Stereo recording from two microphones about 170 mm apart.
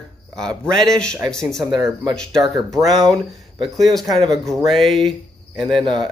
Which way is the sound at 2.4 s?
20° right (ahead or behind).